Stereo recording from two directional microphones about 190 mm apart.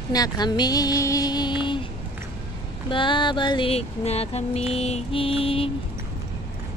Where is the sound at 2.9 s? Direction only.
25° left (ahead or behind).